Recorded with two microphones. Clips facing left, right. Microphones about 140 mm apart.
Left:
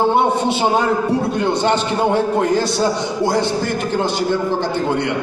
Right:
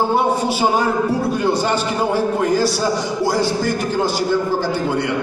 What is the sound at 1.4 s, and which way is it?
A man's voice, 25° left (ahead or behind).